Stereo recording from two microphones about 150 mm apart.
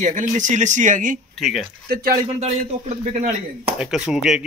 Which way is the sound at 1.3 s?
Centre (ahead or behind).